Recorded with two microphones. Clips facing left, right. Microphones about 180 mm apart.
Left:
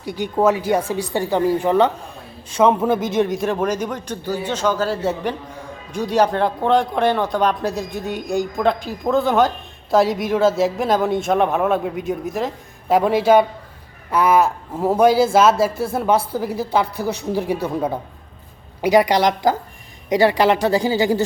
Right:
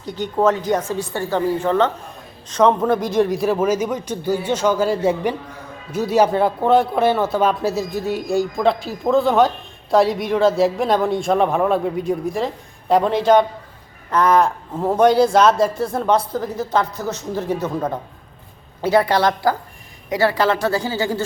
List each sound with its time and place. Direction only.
0.0 s a man's voice: 10° left (ahead or behind)